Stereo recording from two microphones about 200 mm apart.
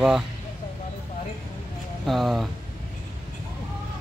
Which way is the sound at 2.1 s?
Centre (ahead or behind).